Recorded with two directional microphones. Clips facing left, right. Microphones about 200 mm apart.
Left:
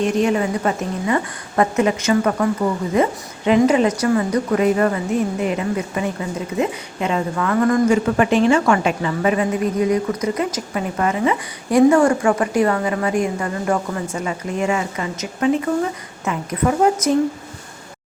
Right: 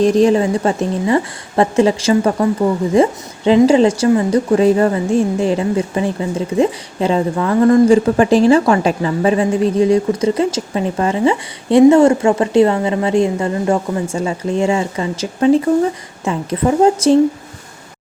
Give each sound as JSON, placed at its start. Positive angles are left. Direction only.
{"t": 0.0, "sound": "a woman's voice", "side_deg": -35}